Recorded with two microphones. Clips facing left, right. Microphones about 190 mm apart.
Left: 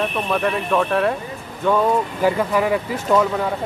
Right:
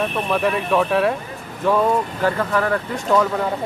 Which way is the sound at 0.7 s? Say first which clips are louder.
Right 1 dB; 5° right (ahead or behind).